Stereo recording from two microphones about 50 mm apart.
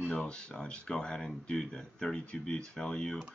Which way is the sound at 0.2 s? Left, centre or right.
Centre.